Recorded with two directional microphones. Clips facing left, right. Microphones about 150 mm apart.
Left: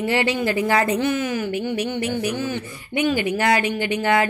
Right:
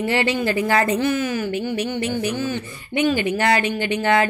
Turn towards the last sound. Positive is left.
turn(degrees=10)  # may be behind; listen again after turning